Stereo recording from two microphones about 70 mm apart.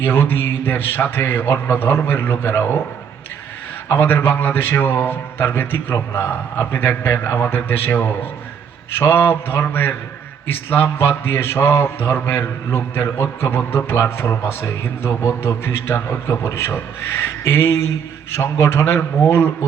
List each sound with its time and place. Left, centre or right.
0.0 s a man's voice: left
3.8 s a man's voice: left
15.2 s a man's voice: left
15.6 s a man's voice: left